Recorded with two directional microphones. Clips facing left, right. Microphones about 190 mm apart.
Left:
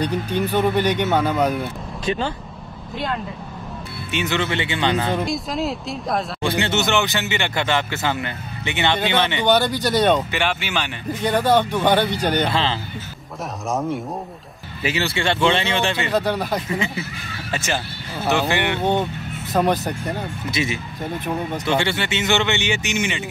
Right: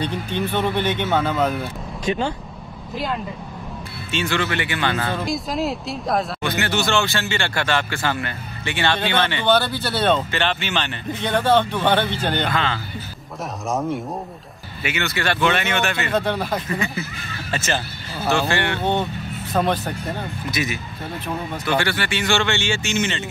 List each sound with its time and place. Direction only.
0.0 s speech: 10° left (ahead or behind)
1.6 s speech: 10° right (ahead or behind)
4.1 s speech: 20° left (ahead or behind)
5.2 s speech: centre (ahead or behind)
6.4 s speech: 25° left (ahead or behind)
12.4 s speech: 30° left (ahead or behind)
13.7 s speech: centre (ahead or behind)
14.8 s speech: 35° left (ahead or behind)
16.1 s speech: centre (ahead or behind)
16.7 s speech: 15° left (ahead or behind)
20.5 s speech: 25° left (ahead or behind)